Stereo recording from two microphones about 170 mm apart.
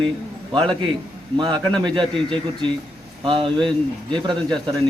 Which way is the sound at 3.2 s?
30° right (ahead or behind).